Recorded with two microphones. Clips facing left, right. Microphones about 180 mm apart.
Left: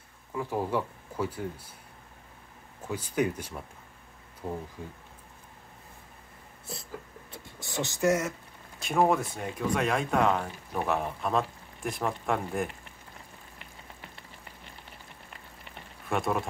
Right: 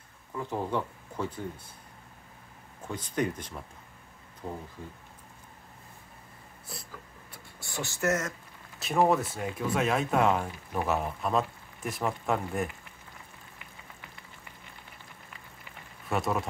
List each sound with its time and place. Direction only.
0.3 s speech: 10° left (ahead or behind)
2.9 s speech: 10° left (ahead or behind)
7.3 s speech: 20° left (ahead or behind)
8.7 s speech: centre (ahead or behind)
16.1 s speech: centre (ahead or behind)